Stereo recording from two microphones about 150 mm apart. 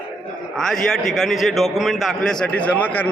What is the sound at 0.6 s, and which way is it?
A man's voice, 5° left (ahead or behind).